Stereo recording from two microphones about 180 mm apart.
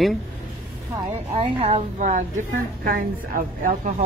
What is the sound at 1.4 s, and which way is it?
Speech, 35° right (ahead or behind).